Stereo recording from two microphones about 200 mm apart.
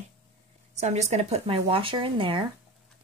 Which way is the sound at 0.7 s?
35° right (ahead or behind).